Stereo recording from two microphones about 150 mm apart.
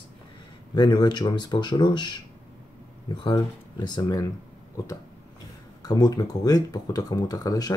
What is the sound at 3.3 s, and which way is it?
Speech, 25° left (ahead or behind).